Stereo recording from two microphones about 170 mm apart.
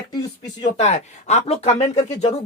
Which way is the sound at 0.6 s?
40° left (ahead or behind).